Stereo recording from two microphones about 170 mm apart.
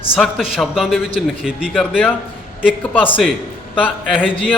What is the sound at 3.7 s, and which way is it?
Speech, 10° left (ahead or behind).